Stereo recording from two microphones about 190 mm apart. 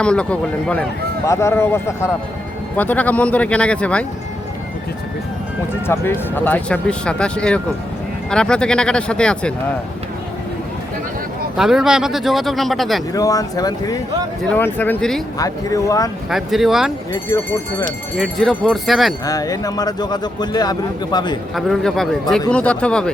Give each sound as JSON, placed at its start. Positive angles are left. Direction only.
{"t": 0.0, "sound": "speech", "side_deg": 5}
{"t": 5.8, "sound": "speech", "side_deg": 10}
{"t": 11.5, "sound": "speech", "side_deg": 0}
{"t": 13.1, "sound": "a man's voice", "side_deg": 20}
{"t": 15.4, "sound": "a man's voice", "side_deg": 20}
{"t": 16.3, "sound": "speech", "side_deg": 0}
{"t": 17.1, "sound": "speech", "side_deg": 15}
{"t": 18.2, "sound": "speech", "side_deg": 0}
{"t": 19.2, "sound": "a man's voice", "side_deg": 20}
{"t": 21.5, "sound": "speech", "side_deg": 0}